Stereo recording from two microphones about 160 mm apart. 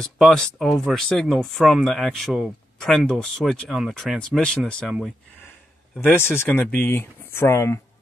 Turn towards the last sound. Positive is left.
turn(degrees=15)  # may be behind; listen again after turning